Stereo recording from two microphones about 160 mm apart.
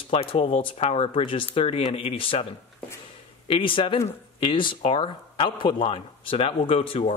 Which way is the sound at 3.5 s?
35° left (ahead or behind).